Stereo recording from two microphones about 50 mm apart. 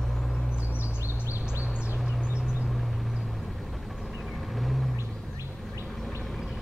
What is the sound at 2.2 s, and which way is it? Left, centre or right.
Vehicle, centre.